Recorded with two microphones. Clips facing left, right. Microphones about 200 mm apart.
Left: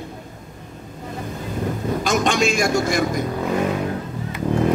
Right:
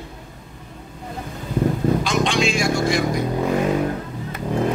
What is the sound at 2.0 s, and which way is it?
A man's voice, 45° left (ahead or behind).